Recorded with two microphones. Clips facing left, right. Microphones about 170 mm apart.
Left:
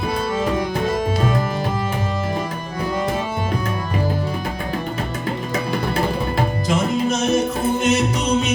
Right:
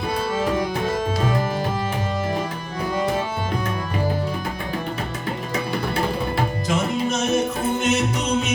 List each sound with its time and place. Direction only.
7.1 s music: 40° left (ahead or behind)